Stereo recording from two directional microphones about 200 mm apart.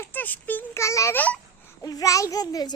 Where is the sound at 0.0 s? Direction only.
10° left (ahead or behind).